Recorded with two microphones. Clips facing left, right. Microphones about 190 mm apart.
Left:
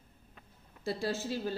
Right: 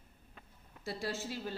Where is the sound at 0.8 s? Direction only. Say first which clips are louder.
Left 5 dB; 30° left (ahead or behind).